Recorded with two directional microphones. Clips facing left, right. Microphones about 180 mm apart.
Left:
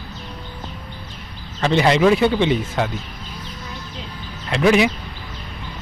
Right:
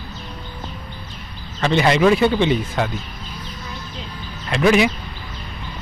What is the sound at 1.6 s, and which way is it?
Speech, 30° left (ahead or behind).